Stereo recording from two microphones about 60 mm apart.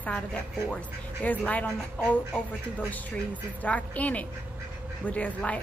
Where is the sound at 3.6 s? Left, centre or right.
Left.